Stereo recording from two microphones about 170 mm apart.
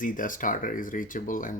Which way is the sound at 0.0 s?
50° left (ahead or behind).